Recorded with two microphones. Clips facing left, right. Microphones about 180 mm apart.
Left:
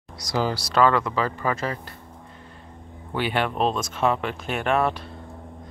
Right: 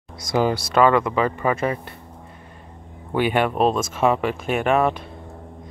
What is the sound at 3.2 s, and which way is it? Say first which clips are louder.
Speech: right 5 dB; 10° right (ahead or behind).